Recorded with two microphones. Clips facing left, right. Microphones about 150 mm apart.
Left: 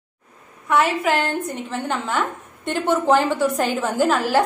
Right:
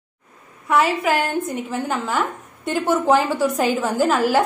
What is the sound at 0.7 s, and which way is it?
A woman's voice, 5° right (ahead or behind).